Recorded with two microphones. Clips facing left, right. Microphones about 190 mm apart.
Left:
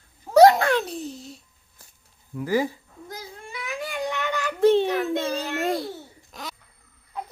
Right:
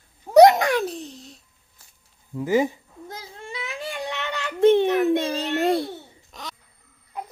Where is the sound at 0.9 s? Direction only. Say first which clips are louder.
Left 1 dB; centre (ahead or behind).